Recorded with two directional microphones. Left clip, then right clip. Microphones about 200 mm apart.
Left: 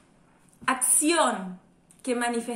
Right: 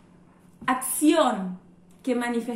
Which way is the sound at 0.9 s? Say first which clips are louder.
Right 4 dB; 20° left (ahead or behind).